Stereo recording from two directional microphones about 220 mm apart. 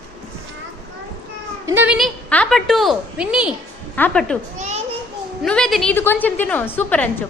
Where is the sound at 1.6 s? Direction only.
10° right (ahead or behind).